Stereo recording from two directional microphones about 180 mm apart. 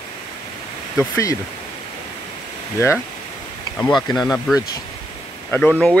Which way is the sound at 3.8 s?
5° left (ahead or behind).